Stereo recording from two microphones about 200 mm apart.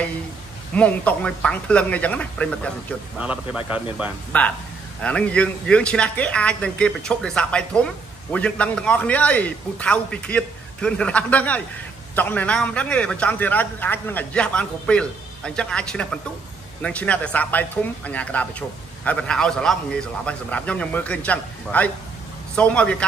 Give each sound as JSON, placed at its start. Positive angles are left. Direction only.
{"t": 0.7, "sound": "speech", "side_deg": 5}
{"t": 3.2, "sound": "a man's voice", "side_deg": -5}
{"t": 4.3, "sound": "speech", "side_deg": 5}